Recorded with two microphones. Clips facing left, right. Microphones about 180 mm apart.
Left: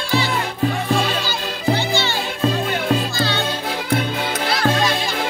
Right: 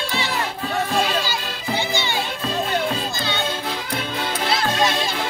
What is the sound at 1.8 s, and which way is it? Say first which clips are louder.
Music: left 3 dB; 15° right (ahead or behind).